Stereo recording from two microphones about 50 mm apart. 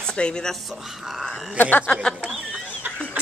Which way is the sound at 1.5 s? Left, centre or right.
Left.